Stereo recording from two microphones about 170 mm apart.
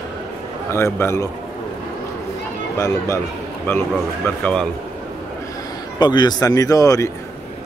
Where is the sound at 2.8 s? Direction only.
20° left (ahead or behind).